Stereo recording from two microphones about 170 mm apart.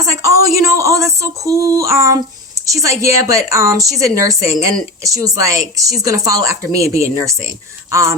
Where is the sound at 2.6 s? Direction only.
20° right (ahead or behind).